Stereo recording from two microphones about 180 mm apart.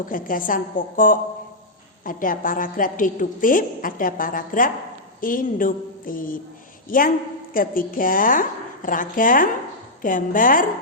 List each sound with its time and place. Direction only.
0.0 s a woman's voice: 50° left (ahead or behind)
7.5 s a woman's voice: 50° left (ahead or behind)